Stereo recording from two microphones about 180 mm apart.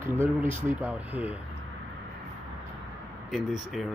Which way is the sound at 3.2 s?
Centre (ahead or behind).